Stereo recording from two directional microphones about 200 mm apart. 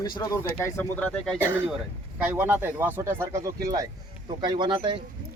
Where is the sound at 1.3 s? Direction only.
10° right (ahead or behind).